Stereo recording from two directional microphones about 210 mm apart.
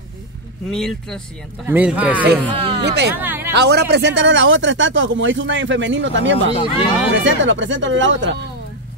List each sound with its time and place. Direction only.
0.7 s speech: centre (ahead or behind)
2.5 s speech: 25° right (ahead or behind)
2.8 s speech: 50° right (ahead or behind)
3.2 s speech: 10° right (ahead or behind)
3.5 s speech: 50° right (ahead or behind)
6.5 s speech: 25° left (ahead or behind)
7.2 s speech: 65° right (ahead or behind)